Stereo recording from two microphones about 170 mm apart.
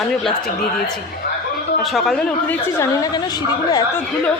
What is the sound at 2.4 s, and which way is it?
A woman's voice, 15° left (ahead or behind).